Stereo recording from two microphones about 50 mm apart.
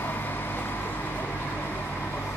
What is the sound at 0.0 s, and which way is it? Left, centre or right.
Vehicle, left.